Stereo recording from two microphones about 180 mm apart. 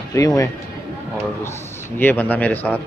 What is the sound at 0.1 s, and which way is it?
Speech, 15° left (ahead or behind).